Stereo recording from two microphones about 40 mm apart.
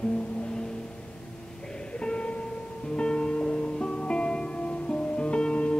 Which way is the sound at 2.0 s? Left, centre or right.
Left.